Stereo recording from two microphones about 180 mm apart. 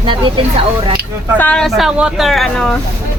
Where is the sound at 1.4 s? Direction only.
5° left (ahead or behind).